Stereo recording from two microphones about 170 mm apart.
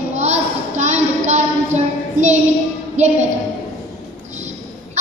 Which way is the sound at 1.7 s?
45° right (ahead or behind).